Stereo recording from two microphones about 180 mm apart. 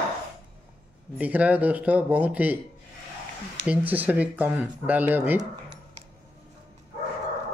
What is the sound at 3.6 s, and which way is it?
Speech, 10° right (ahead or behind).